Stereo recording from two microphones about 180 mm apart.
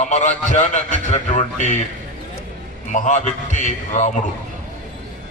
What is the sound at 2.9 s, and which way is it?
A man's voice, 40° left (ahead or behind).